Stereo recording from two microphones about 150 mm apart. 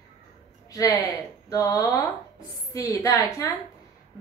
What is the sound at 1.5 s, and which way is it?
A woman's voice, 20° left (ahead or behind).